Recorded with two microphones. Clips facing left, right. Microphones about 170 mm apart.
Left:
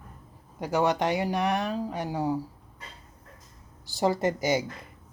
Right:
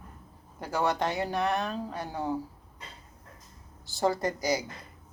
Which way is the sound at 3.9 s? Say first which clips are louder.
Left 3 dB; 20° left (ahead or behind).